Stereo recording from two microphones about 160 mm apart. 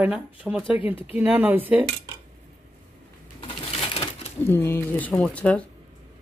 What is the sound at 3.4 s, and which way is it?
Sewing machine, 35° left (ahead or behind).